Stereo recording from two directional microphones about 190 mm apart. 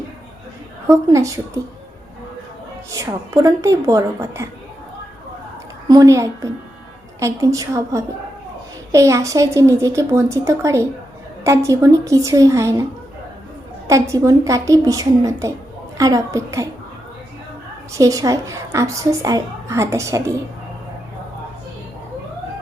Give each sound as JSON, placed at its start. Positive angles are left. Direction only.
{"t": 0.9, "sound": "a woman's voice", "side_deg": -15}
{"t": 2.9, "sound": "a woman's voice", "side_deg": -15}
{"t": 5.9, "sound": "a woman's voice", "side_deg": -20}
{"t": 13.8, "sound": "a woman's voice", "side_deg": -15}
{"t": 17.9, "sound": "a woman's voice", "side_deg": -15}